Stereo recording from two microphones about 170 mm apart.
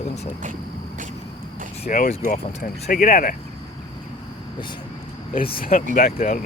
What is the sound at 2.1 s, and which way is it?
Speech, 45° left (ahead or behind).